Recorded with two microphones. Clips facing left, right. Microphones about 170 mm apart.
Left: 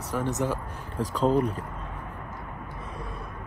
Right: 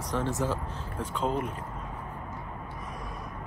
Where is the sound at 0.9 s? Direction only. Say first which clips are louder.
Left 7 dB; 35° left (ahead or behind).